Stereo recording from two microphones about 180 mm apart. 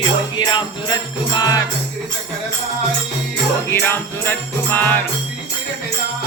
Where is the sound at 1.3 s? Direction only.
20° left (ahead or behind).